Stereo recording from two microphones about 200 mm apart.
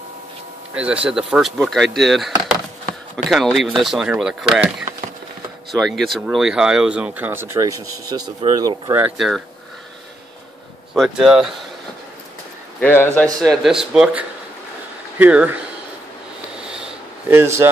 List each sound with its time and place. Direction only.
0.7 s speech: 5° right (ahead or behind)
11.0 s speech: 5° right (ahead or behind)
12.8 s speech: 10° left (ahead or behind); by 15.5 s 10° right (ahead or behind)
16.5 s a sound: 5° right (ahead or behind)